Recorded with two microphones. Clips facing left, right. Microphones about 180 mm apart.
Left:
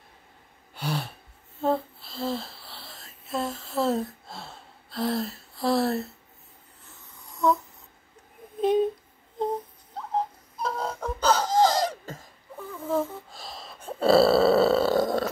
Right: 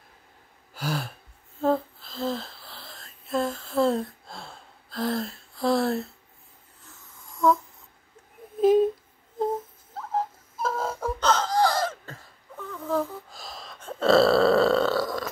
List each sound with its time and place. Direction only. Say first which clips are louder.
0.7 s a sound: even; centre (ahead or behind)
2.1 s a sound: right 1 dB; 5° left (ahead or behind)
9.4 s music: right 1 dB; 5° right (ahead or behind)
11.1 s wail: left 2 dB; 10° left (ahead or behind)
11.5 s wheeze: left 2 dB; 20° left (ahead or behind)
13.3 s gasp: even; centre (ahead or behind)
13.8 s burping: even; 10° left (ahead or behind)
14.9 s burping: left 3 dB; 20° left (ahead or behind)